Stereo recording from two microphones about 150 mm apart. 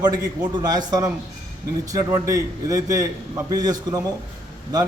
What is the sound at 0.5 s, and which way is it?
A man's voice, 25° right (ahead or behind).